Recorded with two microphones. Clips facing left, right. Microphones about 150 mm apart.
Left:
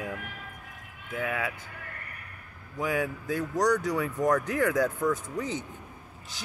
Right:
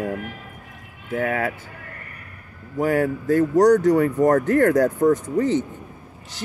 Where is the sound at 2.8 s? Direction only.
45° right (ahead or behind).